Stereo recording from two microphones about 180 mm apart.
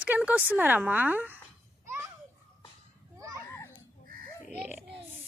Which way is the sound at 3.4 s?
15° left (ahead or behind).